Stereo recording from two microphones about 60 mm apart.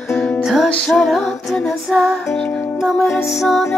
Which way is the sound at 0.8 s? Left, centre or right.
Centre.